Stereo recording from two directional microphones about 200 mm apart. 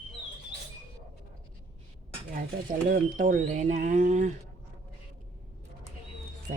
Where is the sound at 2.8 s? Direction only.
40° right (ahead or behind).